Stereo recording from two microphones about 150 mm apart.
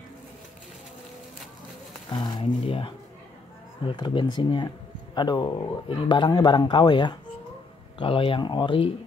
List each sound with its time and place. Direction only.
2.1 s speech: 30° left (ahead or behind)